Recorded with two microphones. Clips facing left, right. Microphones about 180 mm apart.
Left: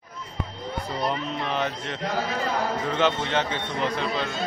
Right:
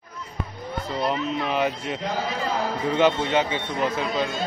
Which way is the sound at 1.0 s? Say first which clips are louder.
Right 3 dB; 5° right (ahead or behind).